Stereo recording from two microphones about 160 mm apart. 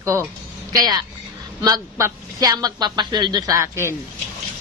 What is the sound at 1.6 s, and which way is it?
A man's voice, 20° right (ahead or behind).